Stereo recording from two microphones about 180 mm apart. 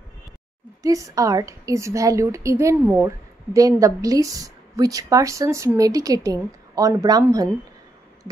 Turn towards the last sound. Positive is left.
turn(degrees=-20)  # may be behind; listen again after turning